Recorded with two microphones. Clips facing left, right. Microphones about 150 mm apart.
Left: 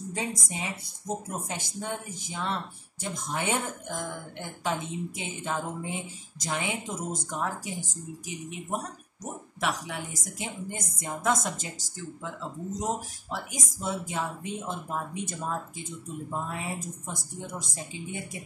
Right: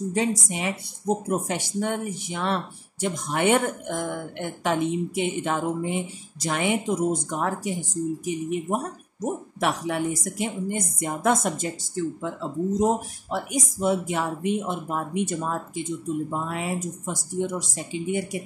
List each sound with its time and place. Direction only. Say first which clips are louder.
0.1 s speech: right 7 dB; 75° right (ahead or behind)
16.3 s speech: right 5 dB; 80° right